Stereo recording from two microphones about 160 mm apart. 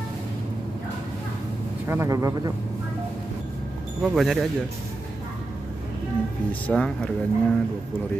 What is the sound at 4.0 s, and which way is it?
Speech, centre (ahead or behind).